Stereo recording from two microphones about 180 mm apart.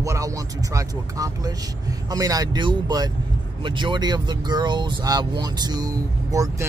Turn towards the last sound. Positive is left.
turn(degrees=-20)  # may be behind; listen again after turning